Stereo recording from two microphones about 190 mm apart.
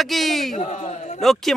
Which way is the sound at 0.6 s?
40° left (ahead or behind).